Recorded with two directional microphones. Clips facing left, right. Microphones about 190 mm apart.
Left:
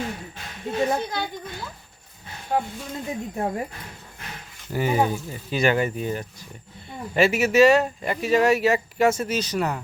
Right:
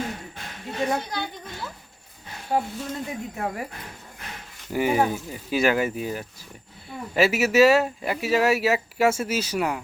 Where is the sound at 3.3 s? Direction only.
25° left (ahead or behind).